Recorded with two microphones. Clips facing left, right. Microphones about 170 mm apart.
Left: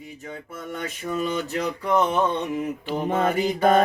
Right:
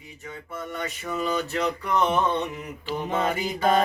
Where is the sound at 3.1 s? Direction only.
50° left (ahead or behind).